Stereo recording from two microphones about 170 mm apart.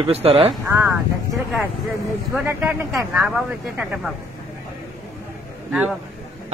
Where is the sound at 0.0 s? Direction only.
35° right (ahead or behind).